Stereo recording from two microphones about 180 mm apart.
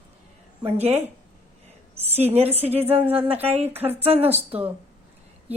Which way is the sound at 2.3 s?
35° right (ahead or behind).